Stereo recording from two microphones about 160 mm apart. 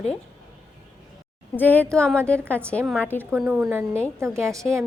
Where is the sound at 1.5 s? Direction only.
10° left (ahead or behind).